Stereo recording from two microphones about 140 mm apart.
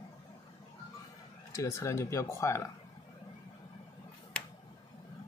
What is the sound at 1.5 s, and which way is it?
Speech, 20° left (ahead or behind).